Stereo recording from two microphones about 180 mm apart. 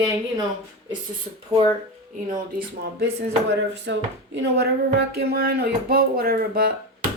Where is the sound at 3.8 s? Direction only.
80° right.